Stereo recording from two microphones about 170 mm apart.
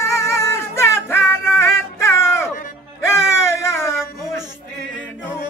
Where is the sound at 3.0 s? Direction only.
15° left (ahead or behind).